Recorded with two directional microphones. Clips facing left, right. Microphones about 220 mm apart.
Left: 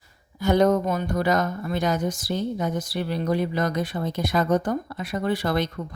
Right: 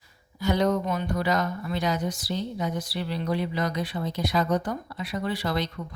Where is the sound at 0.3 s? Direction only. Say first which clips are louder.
Left 5 dB; 50° left (ahead or behind).